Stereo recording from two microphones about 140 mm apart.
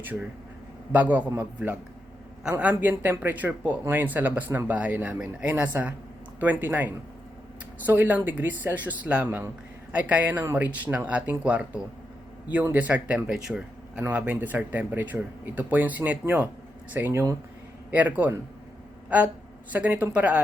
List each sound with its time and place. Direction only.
0.9 s a man's voice: 10° right (ahead or behind)
19.7 s a man's voice: 10° right (ahead or behind)